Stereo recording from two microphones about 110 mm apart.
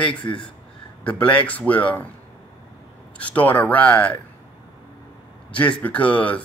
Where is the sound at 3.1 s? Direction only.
15° left (ahead or behind).